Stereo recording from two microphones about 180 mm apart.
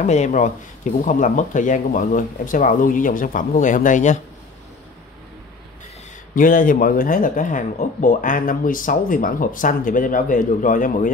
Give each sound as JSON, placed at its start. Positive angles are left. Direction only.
{"t": 0.0, "sound": "speech", "side_deg": 40}
{"t": 6.3, "sound": "speech", "side_deg": 50}